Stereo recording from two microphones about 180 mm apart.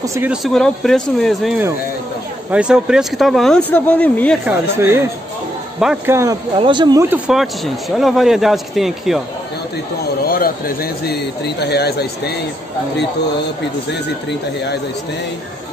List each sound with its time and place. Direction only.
0.0 s speech: 15° right (ahead or behind)
0.3 s speech: centre (ahead or behind)
4.5 s speech: 15° right (ahead or behind)
6.0 s speech: 15° right (ahead or behind)
6.6 s speech: 25° right (ahead or behind)
7.1 s speech: centre (ahead or behind)
10.2 s speech: 55° left (ahead or behind)